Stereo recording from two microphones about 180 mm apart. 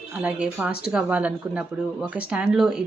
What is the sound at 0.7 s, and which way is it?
Speech, 60° left (ahead or behind).